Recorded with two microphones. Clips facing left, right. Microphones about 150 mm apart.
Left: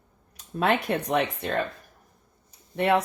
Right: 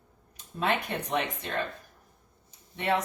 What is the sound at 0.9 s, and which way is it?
Speech, 65° left (ahead or behind).